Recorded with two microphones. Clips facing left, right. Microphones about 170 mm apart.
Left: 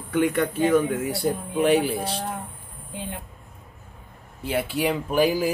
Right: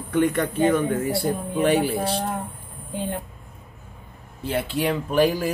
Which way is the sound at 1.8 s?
50° right (ahead or behind).